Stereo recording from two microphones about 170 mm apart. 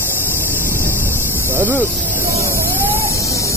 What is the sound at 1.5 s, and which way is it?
Speech, 10° right (ahead or behind).